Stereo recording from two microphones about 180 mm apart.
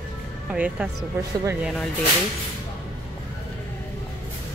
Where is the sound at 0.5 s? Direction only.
5° right (ahead or behind).